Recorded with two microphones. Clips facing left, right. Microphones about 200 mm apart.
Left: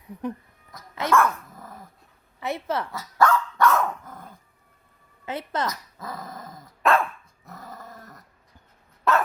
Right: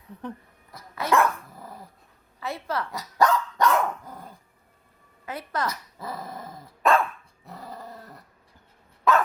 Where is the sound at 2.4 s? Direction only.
20° left (ahead or behind).